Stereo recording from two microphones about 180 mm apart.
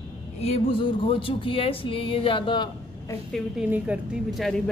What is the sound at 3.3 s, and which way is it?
Speech, 5° right (ahead or behind).